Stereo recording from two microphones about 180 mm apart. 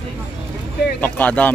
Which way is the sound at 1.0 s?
10° left (ahead or behind).